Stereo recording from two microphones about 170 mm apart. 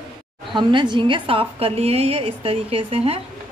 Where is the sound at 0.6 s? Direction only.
25° right (ahead or behind).